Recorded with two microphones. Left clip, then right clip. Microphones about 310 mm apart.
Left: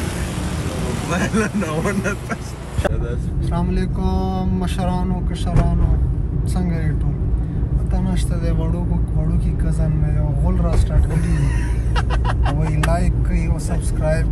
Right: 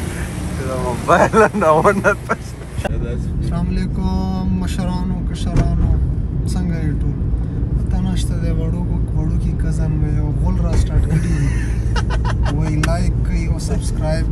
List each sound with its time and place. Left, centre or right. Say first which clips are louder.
0.8 s speech: right 11 dB; centre
3.5 s speech: left 3 dB; centre
12.5 s speech: right 2 dB; centre